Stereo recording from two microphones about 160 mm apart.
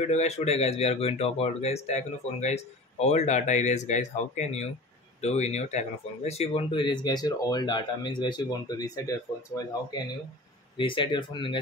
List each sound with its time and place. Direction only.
0.1 s speech: 45° left (ahead or behind)